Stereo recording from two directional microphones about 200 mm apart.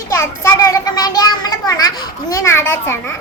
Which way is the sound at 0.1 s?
15° left (ahead or behind).